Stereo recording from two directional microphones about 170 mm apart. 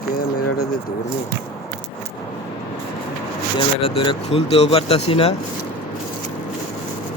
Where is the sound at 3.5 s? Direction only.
30° left (ahead or behind).